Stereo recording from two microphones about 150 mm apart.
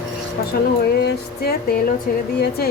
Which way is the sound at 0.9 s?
90° left.